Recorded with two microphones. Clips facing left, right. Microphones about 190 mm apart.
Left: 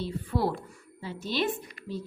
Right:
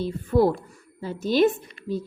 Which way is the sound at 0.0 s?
45° right (ahead or behind).